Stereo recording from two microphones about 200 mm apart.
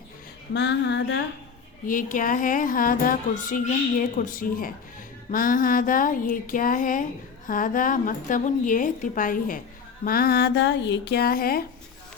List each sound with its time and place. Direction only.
0.5 s female singing: 60° left (ahead or behind)
1.9 s a woman's voice: 40° left (ahead or behind)